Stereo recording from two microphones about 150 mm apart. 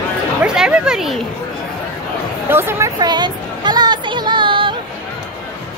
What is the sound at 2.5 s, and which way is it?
Speech, 15° right (ahead or behind).